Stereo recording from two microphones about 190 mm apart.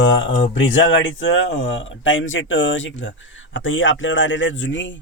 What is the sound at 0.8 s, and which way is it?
A man's voice, 85° left.